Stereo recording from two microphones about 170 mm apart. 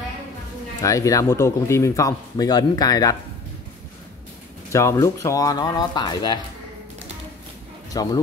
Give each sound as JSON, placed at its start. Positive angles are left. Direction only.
{"t": 0.8, "sound": "speech", "side_deg": 20}
{"t": 4.7, "sound": "speech", "side_deg": 15}
{"t": 7.9, "sound": "speech", "side_deg": 20}